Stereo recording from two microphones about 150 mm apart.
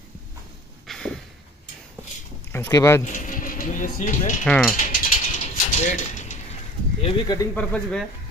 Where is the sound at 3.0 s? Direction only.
55° left (ahead or behind).